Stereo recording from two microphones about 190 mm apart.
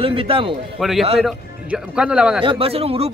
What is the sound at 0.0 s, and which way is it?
Speech, 30° right (ahead or behind).